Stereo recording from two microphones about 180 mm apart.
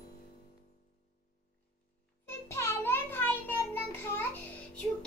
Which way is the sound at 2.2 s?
15° left (ahead or behind).